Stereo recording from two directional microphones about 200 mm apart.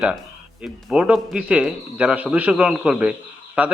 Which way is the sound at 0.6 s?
5° right (ahead or behind).